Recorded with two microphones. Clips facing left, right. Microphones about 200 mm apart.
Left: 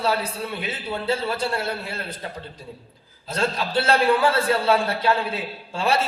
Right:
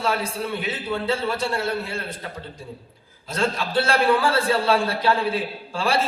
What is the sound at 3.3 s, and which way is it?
Speech, 25° left (ahead or behind).